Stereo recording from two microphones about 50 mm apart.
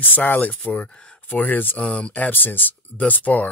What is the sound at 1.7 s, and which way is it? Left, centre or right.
Speech, left.